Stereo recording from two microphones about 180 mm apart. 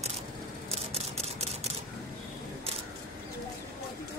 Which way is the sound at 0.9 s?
35° right (ahead or behind).